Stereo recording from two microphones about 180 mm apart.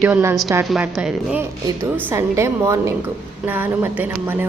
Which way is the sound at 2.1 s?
15° right (ahead or behind).